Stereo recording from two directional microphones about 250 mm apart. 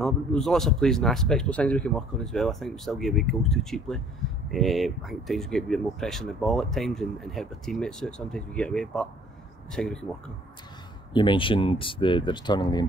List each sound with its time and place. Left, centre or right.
0.0 s speech: centre
11.1 s speech: centre